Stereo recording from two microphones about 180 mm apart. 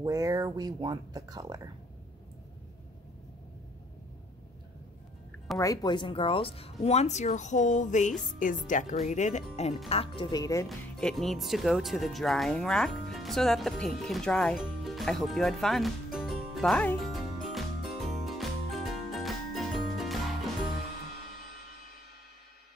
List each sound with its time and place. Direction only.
0.0 s speech: 20° right (ahead or behind)
5.6 s speech: 20° left (ahead or behind)
10.7 s music: 5° left (ahead or behind)